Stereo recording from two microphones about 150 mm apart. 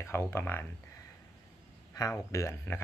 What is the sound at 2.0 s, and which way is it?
Speech, 20° left (ahead or behind).